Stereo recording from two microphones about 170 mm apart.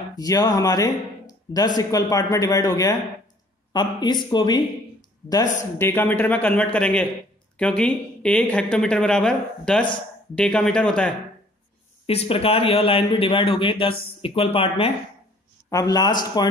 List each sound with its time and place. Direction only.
0.1 s a man's voice: 20° left (ahead or behind); by 11.1 s 5° left (ahead or behind)
12.1 s speech: 35° left (ahead or behind)
15.7 s speech: 20° left (ahead or behind)